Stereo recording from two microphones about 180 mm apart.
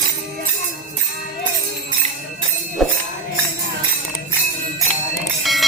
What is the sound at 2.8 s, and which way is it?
Tambourine, centre (ahead or behind).